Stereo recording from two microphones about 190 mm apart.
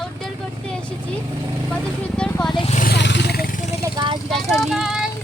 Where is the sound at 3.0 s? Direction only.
65° left (ahead or behind); by 3.8 s 40° left (ahead or behind).